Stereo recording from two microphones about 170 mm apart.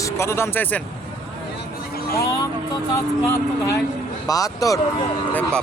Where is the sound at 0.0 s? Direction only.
15° left (ahead or behind).